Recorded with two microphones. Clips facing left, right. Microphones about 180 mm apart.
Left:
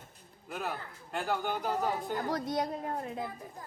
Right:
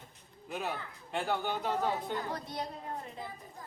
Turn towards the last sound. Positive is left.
turn(degrees=50)  # may be behind; listen again after turning